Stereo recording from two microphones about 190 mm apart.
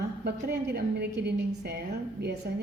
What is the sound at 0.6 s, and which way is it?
A woman's voice, 60° right (ahead or behind).